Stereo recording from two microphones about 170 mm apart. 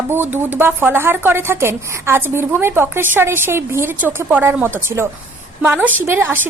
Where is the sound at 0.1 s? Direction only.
10° right (ahead or behind).